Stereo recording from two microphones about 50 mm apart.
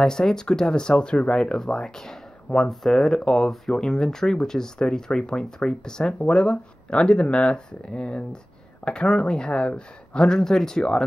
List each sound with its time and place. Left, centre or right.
0.0 s speech: centre
6.1 s speech: left